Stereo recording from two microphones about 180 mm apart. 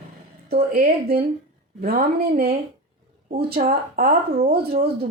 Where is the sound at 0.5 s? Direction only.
60° right (ahead or behind).